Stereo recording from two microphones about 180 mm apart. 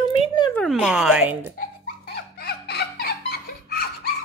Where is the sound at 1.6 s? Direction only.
60° left (ahead or behind).